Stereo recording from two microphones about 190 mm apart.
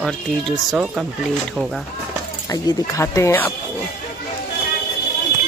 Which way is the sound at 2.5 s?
20° left (ahead or behind).